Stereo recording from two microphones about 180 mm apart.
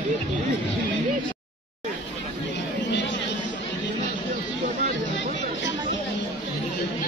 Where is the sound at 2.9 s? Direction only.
80° left.